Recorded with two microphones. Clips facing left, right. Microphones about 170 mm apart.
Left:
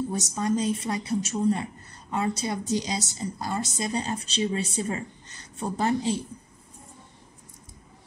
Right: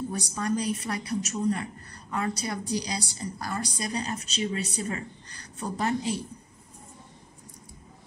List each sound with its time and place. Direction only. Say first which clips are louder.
0.1 s a woman's voice: left 3 dB; 20° left (ahead or behind)